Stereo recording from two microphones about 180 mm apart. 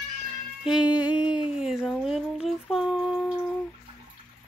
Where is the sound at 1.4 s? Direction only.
5° right (ahead or behind).